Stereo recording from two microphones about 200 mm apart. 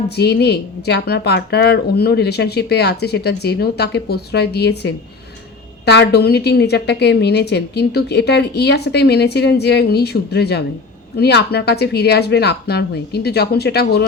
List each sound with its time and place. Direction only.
0.2 s a woman's voice: 55° left (ahead or behind)